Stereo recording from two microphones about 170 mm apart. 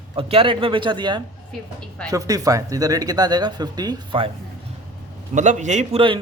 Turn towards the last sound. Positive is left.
turn(degrees=-35)  # may be behind; listen again after turning